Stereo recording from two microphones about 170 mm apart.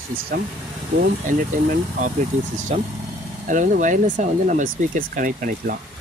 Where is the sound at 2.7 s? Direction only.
40° right (ahead or behind).